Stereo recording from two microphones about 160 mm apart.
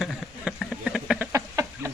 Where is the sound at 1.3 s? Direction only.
20° right (ahead or behind).